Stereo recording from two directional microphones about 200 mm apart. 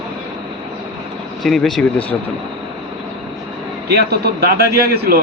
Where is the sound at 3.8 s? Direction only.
55° right (ahead or behind).